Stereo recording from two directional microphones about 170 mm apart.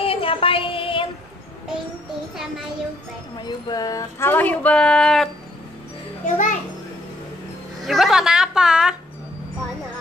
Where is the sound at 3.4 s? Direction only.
25° left (ahead or behind); by 5.3 s 5° left (ahead or behind).